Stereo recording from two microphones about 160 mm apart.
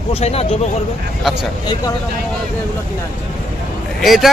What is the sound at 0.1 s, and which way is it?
Speech, 40° left (ahead or behind).